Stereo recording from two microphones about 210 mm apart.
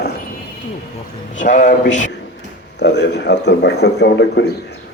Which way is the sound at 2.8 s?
55° left (ahead or behind).